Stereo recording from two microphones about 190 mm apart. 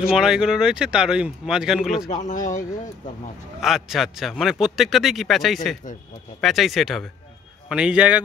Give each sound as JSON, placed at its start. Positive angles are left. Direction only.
{"t": 0.1, "sound": "a man's voice", "side_deg": -5}
{"t": 2.0, "sound": "speech", "side_deg": 40}
{"t": 3.6, "sound": "a man's voice", "side_deg": 0}